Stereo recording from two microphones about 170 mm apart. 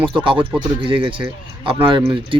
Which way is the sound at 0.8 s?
30° right (ahead or behind).